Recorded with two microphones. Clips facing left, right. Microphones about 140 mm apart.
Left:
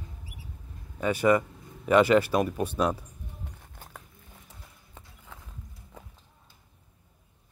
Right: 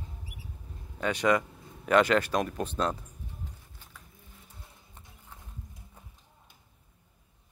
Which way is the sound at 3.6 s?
60° left (ahead or behind).